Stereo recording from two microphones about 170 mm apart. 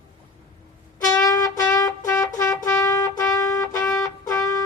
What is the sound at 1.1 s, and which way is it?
Music, 20° left (ahead or behind).